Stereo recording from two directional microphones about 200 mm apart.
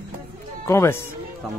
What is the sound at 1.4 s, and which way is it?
Speech, centre (ahead or behind).